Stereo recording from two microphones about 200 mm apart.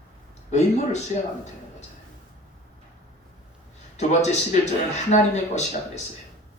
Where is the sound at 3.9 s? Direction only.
35° left (ahead or behind).